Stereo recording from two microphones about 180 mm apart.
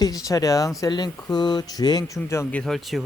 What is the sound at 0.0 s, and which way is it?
Speech, 20° left (ahead or behind).